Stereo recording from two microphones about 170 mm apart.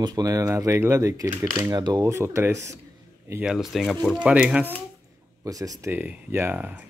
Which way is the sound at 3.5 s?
Centre (ahead or behind).